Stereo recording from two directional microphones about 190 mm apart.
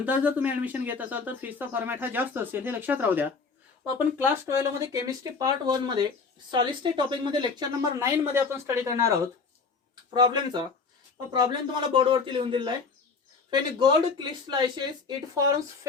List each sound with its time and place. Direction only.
0.0 s speech: 10° right (ahead or behind)
10.2 s speech: 25° right (ahead or behind)
11.9 s speech: 25° right (ahead or behind)